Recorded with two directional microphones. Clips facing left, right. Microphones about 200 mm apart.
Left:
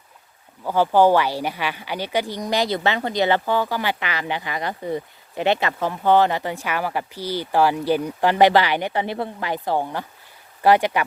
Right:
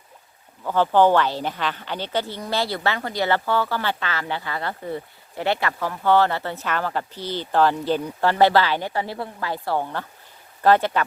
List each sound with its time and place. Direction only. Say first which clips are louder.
0.6 s speech: left 1 dB; 10° left (ahead or behind)